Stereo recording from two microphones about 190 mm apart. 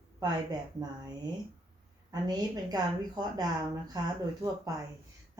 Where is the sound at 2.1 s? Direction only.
20° right (ahead or behind).